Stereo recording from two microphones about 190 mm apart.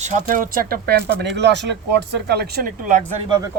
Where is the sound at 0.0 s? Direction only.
45° right (ahead or behind).